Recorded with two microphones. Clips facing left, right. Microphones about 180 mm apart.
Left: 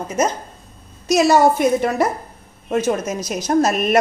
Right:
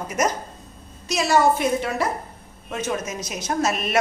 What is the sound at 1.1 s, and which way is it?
A woman's voice, 45° left (ahead or behind).